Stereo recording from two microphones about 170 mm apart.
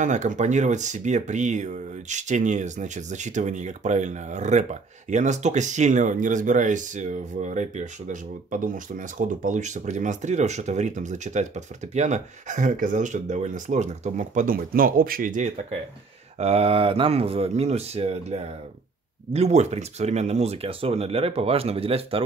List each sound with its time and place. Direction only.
0.0 s speech: 45° right (ahead or behind)
16.3 s speech: 35° right (ahead or behind)